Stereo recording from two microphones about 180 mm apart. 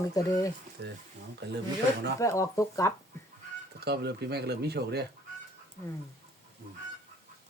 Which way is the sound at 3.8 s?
65° right (ahead or behind).